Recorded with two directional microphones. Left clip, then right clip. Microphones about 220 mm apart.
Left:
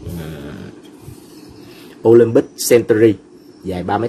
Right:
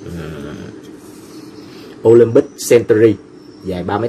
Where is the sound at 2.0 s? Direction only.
25° left (ahead or behind).